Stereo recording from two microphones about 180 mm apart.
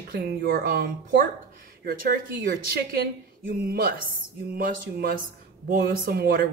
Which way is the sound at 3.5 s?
60° right (ahead or behind).